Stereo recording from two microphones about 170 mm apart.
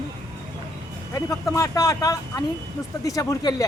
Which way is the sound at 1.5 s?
20° left (ahead or behind).